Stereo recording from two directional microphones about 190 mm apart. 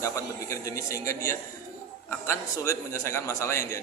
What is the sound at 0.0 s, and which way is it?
A man's voice, 15° left (ahead or behind).